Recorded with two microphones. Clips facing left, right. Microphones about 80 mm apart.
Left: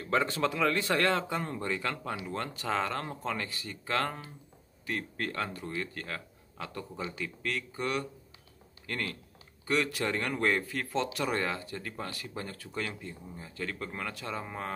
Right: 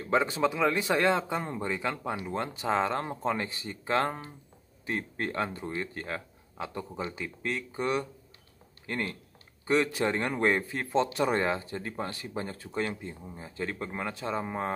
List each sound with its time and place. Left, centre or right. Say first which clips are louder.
0.0 s speech: right 3 dB; centre